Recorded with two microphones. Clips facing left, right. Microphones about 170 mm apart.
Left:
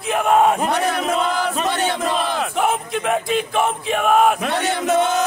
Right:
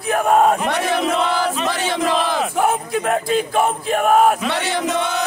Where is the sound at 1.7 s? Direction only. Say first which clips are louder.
Right 1 dB; 90° right.